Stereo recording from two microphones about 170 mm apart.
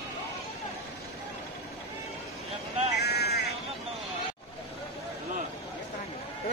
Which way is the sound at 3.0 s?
70° left (ahead or behind).